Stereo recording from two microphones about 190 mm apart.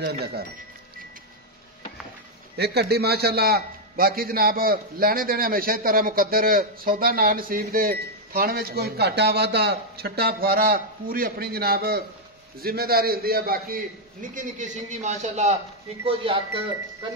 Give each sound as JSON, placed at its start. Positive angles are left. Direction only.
{"t": 0.2, "sound": "speech", "side_deg": -55}
{"t": 2.5, "sound": "a man's voice", "side_deg": -60}